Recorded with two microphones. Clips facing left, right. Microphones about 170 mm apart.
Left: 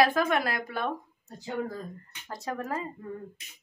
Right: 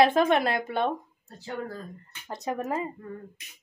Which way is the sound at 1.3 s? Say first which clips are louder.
Left 2 dB; 10° left (ahead or behind).